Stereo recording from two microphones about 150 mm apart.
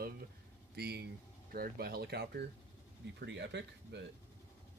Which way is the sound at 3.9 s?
90° right.